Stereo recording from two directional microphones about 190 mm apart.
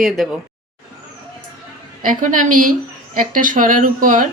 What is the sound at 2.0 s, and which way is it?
Speech, 45° right (ahead or behind).